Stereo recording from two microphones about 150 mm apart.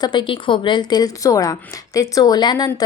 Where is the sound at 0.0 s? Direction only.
30° left (ahead or behind).